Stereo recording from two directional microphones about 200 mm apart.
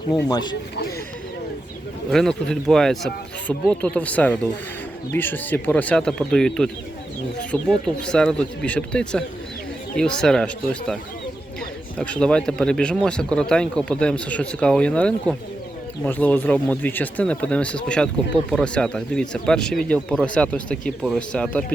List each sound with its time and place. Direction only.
0.1 s speech: 20° left (ahead or behind)
2.0 s speech: centre (ahead or behind)
11.9 s speech: 5° left (ahead or behind)